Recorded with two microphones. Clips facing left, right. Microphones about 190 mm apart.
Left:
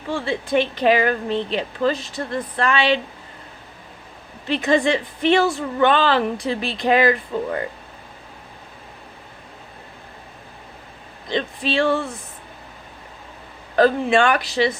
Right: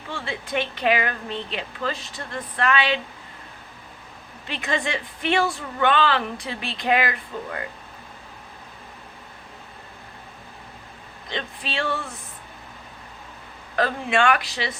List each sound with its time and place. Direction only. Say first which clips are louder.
0.1 s speech: left 8 dB; 35° left (ahead or behind)
4.4 s speech: left 9 dB; 35° left (ahead or behind)
11.3 s speech: left 9 dB; 35° left (ahead or behind)
13.7 s speech: left 7 dB; 35° left (ahead or behind)